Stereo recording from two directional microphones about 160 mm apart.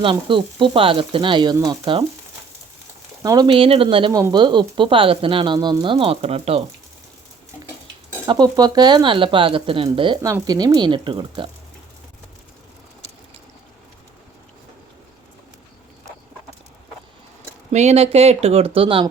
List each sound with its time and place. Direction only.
0.0 s speech: 30° right (ahead or behind)
1.8 s speech: 35° right (ahead or behind)
3.2 s speech: 30° right (ahead or behind)
8.3 s speech: 25° right (ahead or behind)
10.2 s speech: 20° right (ahead or behind)
17.7 s speech: 45° right (ahead or behind)